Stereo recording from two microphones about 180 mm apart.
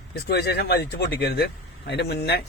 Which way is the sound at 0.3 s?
65° left (ahead or behind).